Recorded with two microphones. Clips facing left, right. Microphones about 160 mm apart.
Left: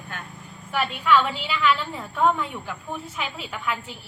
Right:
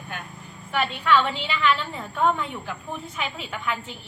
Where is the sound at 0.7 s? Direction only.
5° left (ahead or behind).